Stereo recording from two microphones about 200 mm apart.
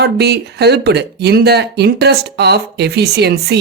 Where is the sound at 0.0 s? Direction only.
55° right (ahead or behind).